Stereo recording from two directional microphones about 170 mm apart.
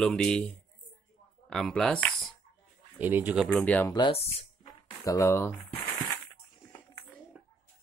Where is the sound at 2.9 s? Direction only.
10° right (ahead or behind).